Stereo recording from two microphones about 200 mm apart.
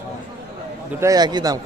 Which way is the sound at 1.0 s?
20° right (ahead or behind).